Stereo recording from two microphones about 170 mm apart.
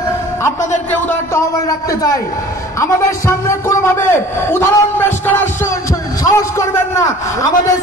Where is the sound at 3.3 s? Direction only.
15° left (ahead or behind).